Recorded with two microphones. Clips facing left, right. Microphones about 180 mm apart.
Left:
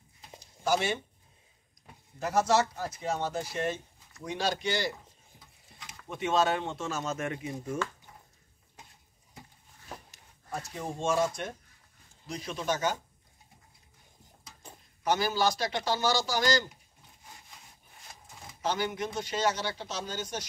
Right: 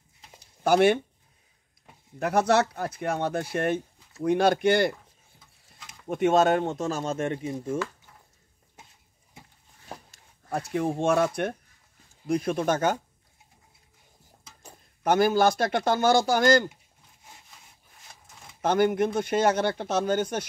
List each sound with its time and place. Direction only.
0.4 s a sound: 60° right (ahead or behind)
2.1 s speech: 60° right (ahead or behind)
6.0 s speech: 50° right (ahead or behind); by 7.5 s 30° right (ahead or behind)
10.5 s speech: 65° right (ahead or behind)
15.0 s speech: 55° right (ahead or behind)
18.6 s speech: 55° right (ahead or behind)